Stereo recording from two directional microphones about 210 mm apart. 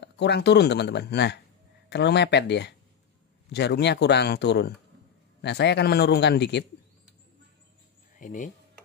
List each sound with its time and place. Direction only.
0.0 s speech: 55° left (ahead or behind)
8.2 s speech: 35° left (ahead or behind)